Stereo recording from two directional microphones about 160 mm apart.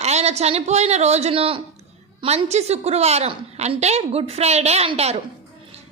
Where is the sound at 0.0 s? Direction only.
40° right (ahead or behind).